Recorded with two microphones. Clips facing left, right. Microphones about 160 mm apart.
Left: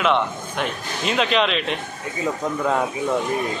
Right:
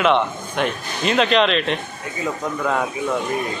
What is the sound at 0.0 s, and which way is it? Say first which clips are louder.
Speech: right 2 dB; centre (ahead or behind).